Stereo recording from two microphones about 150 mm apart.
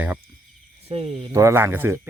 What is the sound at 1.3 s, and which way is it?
Speech, 20° right (ahead or behind).